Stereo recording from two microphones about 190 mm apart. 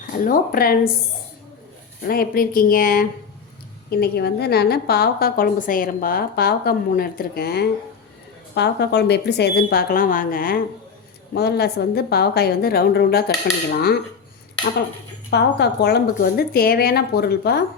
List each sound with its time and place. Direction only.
0.1 s speech: 50° left (ahead or behind)
2.0 s a woman's voice: 50° left (ahead or behind)
15.3 s a woman's voice: 60° left (ahead or behind)